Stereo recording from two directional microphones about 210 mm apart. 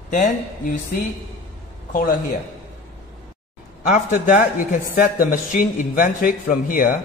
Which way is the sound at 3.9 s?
40° left (ahead or behind).